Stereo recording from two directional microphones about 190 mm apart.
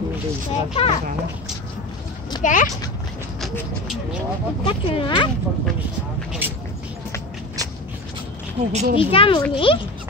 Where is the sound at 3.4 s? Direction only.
Centre (ahead or behind).